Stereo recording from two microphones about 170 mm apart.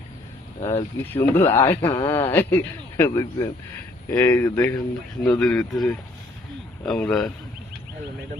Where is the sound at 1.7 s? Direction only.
30° left (ahead or behind).